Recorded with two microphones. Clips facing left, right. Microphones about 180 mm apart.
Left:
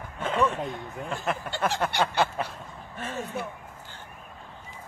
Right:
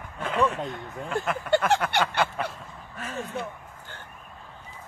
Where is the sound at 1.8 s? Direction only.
25° left (ahead or behind).